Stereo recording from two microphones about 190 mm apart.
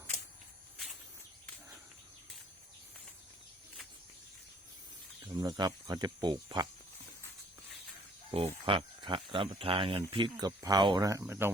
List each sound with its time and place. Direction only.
5.2 s speech: 20° right (ahead or behind)
8.3 s speech: 30° right (ahead or behind); by 11.5 s 10° right (ahead or behind)